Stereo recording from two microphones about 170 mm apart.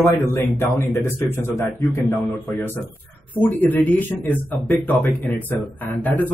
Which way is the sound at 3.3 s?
10° left (ahead or behind).